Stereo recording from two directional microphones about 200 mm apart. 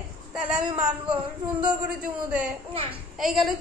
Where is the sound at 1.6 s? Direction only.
5° right (ahead or behind).